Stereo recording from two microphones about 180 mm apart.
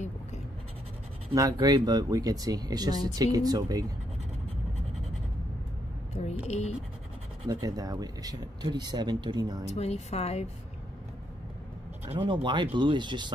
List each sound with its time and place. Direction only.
1.3 s speech: 20° right (ahead or behind)
6.4 s a woman's voice: 35° left (ahead or behind)
7.4 s speech: 20° right (ahead or behind)
9.8 s a woman's voice: 35° left (ahead or behind)
12.1 s speech: 25° right (ahead or behind)